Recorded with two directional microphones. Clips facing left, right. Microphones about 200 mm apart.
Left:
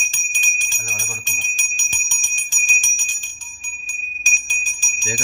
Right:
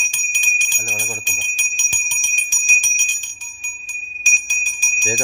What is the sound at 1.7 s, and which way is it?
Bicycle bell, 15° right (ahead or behind).